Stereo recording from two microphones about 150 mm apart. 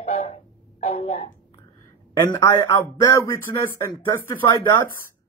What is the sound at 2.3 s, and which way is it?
Speech, 20° left (ahead or behind).